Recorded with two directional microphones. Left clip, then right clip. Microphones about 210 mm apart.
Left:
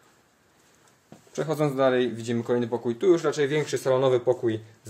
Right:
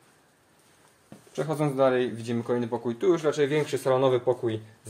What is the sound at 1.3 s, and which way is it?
Speech, 25° left (ahead or behind).